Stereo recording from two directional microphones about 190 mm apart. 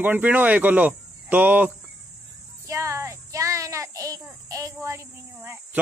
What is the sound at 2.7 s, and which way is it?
Child singing, 15° right (ahead or behind).